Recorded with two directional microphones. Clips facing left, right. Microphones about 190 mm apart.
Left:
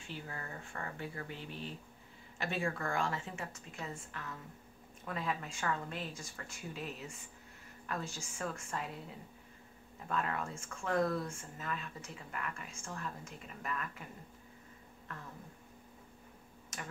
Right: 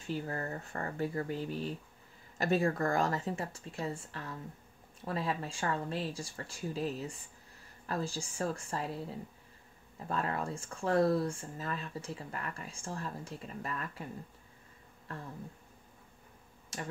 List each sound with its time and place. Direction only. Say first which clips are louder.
0.0 s speech: right 9 dB; 40° right (ahead or behind)
15.1 s speech: right 5 dB; 30° right (ahead or behind)
16.7 s speech: right 5 dB; 30° right (ahead or behind)